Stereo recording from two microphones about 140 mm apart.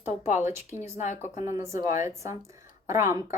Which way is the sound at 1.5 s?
20° right (ahead or behind).